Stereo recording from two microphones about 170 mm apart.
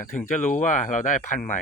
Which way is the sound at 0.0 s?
50° left (ahead or behind).